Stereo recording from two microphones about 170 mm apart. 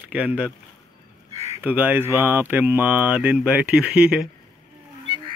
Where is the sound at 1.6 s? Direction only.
10° right (ahead or behind).